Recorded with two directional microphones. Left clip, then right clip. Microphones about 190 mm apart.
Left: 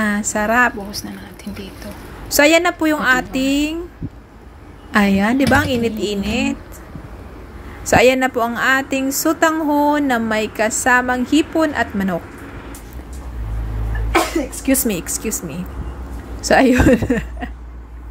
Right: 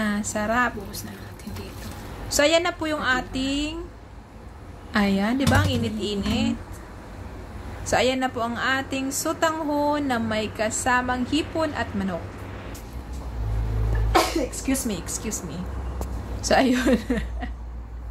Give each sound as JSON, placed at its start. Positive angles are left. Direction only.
{"t": 0.0, "sound": "a woman's voice", "side_deg": 30}
{"t": 2.2, "sound": "speech", "side_deg": 30}
{"t": 4.9, "sound": "speech", "side_deg": 30}
{"t": 7.9, "sound": "speech", "side_deg": 35}
{"t": 14.7, "sound": "speech", "side_deg": 40}
{"t": 16.4, "sound": "a woman's voice", "side_deg": 25}